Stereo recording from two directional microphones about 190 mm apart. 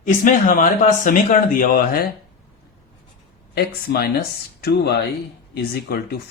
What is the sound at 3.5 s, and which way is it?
Speech, 55° left (ahead or behind).